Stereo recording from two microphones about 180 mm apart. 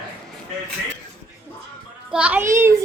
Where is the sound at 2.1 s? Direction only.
5° right (ahead or behind).